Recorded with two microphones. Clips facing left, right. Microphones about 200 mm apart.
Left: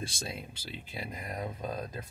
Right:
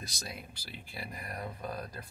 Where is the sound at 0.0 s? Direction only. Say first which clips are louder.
Left 5 dB; 25° left (ahead or behind).